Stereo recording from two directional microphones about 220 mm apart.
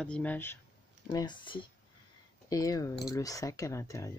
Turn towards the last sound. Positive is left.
turn(degrees=15)  # may be behind; listen again after turning